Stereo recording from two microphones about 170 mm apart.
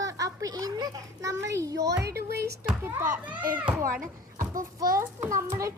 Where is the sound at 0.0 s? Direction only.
20° right (ahead or behind).